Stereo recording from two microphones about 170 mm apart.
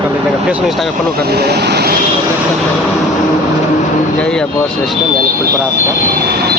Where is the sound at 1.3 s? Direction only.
70° right (ahead or behind).